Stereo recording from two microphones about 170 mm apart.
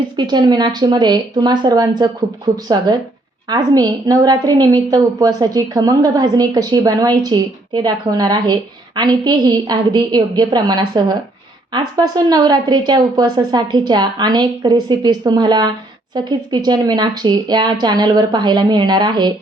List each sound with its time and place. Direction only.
0.2 s a woman's voice: 25° right (ahead or behind)